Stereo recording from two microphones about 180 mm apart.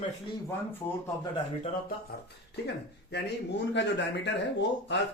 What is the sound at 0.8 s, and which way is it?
Speech, 15° left (ahead or behind).